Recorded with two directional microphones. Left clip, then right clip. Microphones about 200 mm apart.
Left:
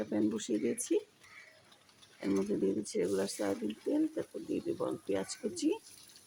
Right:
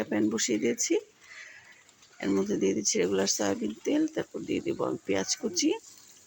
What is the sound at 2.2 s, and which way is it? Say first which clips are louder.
Speech: right 5 dB; 15° right (ahead or behind).